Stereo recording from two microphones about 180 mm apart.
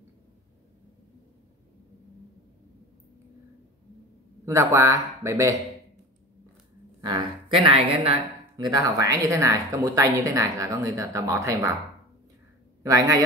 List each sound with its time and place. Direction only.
4.5 s speech: 15° right (ahead or behind)
7.0 s speech: 25° right (ahead or behind)
12.8 s speech: 20° right (ahead or behind)